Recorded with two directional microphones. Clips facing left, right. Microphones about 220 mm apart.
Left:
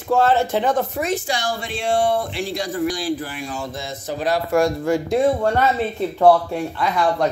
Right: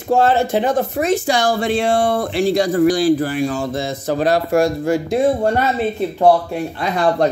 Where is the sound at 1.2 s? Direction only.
90° right.